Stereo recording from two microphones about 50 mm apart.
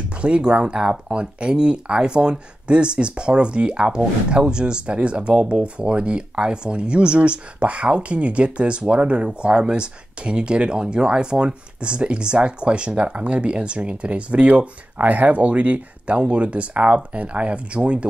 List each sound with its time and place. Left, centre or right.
0.2 s speech: centre